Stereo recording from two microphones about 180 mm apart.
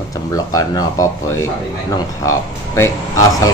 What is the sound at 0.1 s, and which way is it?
Speech, 20° left (ahead or behind).